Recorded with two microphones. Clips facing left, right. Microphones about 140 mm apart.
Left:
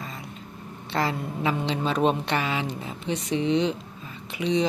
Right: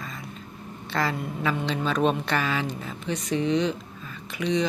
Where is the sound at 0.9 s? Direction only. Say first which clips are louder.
Left 1 dB; 25° left (ahead or behind).